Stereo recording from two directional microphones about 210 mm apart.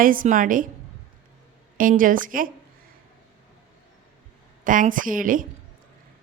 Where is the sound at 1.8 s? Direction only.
40° right (ahead or behind).